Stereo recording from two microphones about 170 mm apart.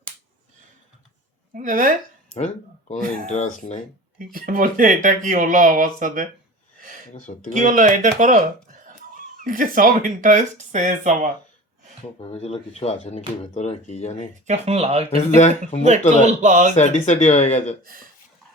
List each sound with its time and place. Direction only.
1.5 s speech: 50° right (ahead or behind)
3.3 s speech: 50° left (ahead or behind)
4.3 s speech: 55° right (ahead or behind)
7.3 s speech: 45° left (ahead or behind)
7.6 s speech: 50° right (ahead or behind)
12.2 s speech: 35° left (ahead or behind)
14.4 s speech: 40° right (ahead or behind)
16.7 s speech: 45° left (ahead or behind)
17.8 s speech: 55° right (ahead or behind)